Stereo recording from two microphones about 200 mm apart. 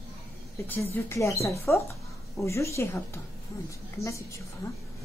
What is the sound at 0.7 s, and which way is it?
A woman's voice, 15° left (ahead or behind).